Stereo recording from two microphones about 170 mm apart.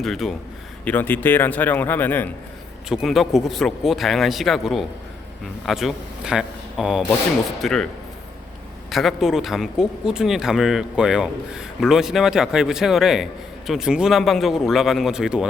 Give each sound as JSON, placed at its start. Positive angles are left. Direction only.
{"t": 0.0, "sound": "a man's voice", "side_deg": 0}
{"t": 2.9, "sound": "a man's voice", "side_deg": 0}
{"t": 8.9, "sound": "speech", "side_deg": 0}